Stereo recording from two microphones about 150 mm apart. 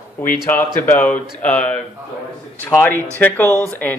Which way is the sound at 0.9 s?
10° left (ahead or behind).